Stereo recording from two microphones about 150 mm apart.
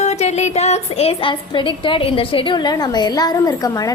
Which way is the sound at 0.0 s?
45° left (ahead or behind).